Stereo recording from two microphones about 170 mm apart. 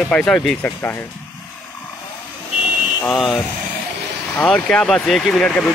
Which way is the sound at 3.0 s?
Centre (ahead or behind).